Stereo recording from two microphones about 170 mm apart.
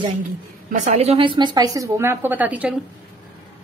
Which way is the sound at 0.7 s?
40° right (ahead or behind).